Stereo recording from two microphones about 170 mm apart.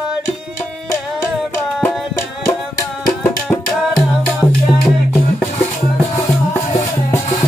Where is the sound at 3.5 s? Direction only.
Centre (ahead or behind).